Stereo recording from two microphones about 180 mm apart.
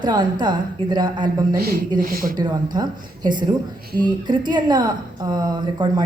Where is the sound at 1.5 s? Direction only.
60° right (ahead or behind).